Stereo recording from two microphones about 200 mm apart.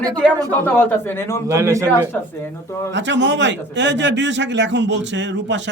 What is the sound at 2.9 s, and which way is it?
A man's voice, 65° right (ahead or behind).